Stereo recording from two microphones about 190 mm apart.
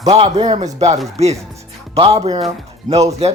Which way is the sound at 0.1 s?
30° right (ahead or behind).